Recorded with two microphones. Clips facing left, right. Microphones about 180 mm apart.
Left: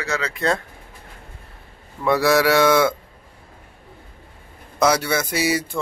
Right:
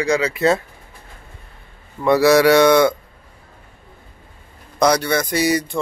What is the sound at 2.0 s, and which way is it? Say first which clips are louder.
Speech: right 4 dB; centre (ahead or behind).